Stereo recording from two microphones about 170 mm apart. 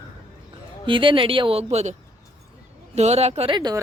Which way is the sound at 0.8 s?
30° right (ahead or behind).